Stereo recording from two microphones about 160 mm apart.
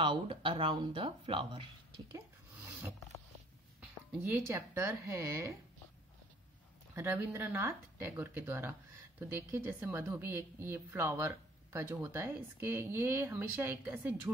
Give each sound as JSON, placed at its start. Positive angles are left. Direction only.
{"t": 0.0, "sound": "speech", "side_deg": -30}
{"t": 2.6, "sound": "roaring cats", "side_deg": -5}
{"t": 3.8, "sound": "speech", "side_deg": -10}
{"t": 7.0, "sound": "speech", "side_deg": -15}